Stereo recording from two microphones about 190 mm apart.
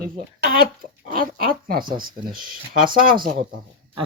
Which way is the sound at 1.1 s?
50° right (ahead or behind).